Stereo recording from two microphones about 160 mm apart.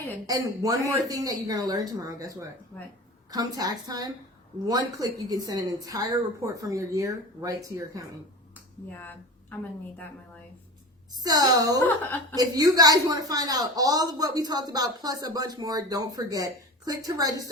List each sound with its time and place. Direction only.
0.3 s a man's voice: 20° right (ahead or behind)
9.0 s a woman's voice: 10° left (ahead or behind)
11.2 s a man's voice: 25° right (ahead or behind)